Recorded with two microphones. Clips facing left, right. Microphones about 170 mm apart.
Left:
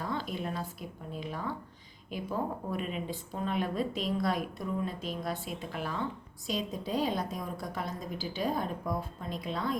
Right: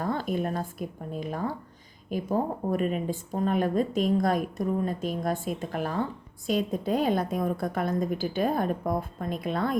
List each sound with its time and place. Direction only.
0.0 s a woman's voice: 50° right (ahead or behind)